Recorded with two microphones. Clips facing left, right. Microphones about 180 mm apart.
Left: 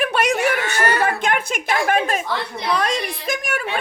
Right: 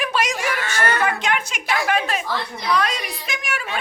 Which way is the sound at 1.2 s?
55° left (ahead or behind).